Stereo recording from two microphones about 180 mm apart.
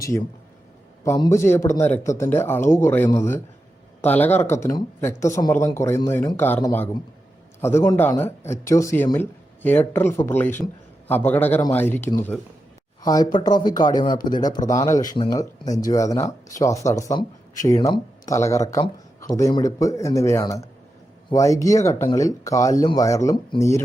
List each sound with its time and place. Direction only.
1.0 s speech: 15° left (ahead or behind)